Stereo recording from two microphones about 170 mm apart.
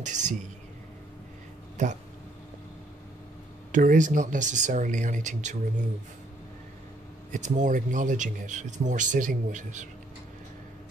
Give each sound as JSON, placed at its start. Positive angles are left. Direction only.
{"t": 0.0, "sound": "speech", "side_deg": -45}
{"t": 1.8, "sound": "speech", "side_deg": -45}
{"t": 3.7, "sound": "speech", "side_deg": -50}
{"t": 7.3, "sound": "speech", "side_deg": -45}